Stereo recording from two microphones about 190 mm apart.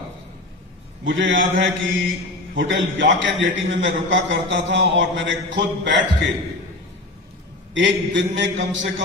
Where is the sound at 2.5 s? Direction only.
75° right (ahead or behind).